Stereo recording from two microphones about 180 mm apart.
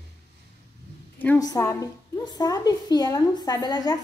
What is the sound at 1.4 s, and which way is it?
A woman's voice, 20° left (ahead or behind).